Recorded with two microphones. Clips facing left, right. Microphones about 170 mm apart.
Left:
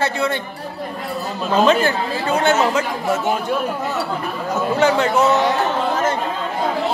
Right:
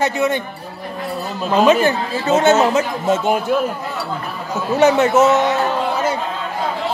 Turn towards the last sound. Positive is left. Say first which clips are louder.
# right 3 dB
turn(degrees=-20)  # may be behind; listen again after turning